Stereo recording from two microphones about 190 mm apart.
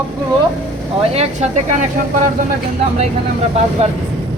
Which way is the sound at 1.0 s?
30° right (ahead or behind).